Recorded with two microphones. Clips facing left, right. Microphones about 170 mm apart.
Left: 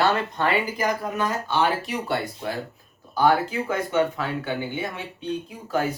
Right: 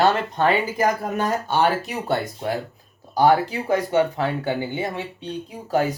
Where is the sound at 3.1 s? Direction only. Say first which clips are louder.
Right 3 dB; 35° right (ahead or behind).